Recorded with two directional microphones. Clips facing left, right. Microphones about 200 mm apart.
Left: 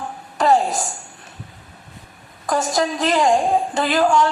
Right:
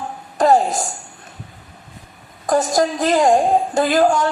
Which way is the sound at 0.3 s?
40° right (ahead or behind).